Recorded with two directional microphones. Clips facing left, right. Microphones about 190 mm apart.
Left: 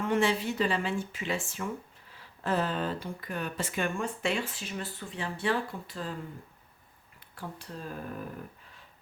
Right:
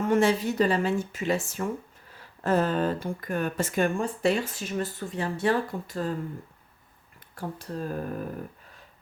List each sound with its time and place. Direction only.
0.0 s speech: 45° right (ahead or behind)
7.3 s speech: 45° right (ahead or behind)